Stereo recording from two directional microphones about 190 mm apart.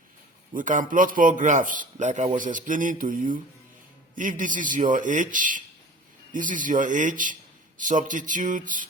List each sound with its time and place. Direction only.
0.5 s a man's voice: 45° right (ahead or behind)